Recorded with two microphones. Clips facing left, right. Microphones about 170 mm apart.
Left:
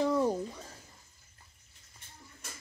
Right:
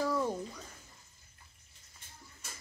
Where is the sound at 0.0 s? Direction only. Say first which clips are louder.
Left 4 dB; 30° left (ahead or behind).